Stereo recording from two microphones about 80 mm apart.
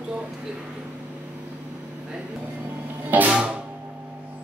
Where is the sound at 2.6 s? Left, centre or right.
Centre.